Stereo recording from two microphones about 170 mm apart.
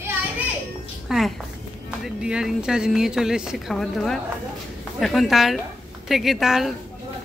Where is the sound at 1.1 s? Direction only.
Centre (ahead or behind).